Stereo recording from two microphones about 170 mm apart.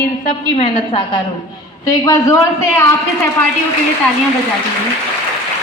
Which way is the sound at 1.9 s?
20° left (ahead or behind).